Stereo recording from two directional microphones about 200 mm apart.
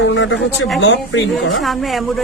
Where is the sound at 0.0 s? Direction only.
65° left (ahead or behind).